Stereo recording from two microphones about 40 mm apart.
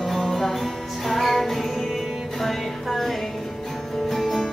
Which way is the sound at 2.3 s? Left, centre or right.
Centre.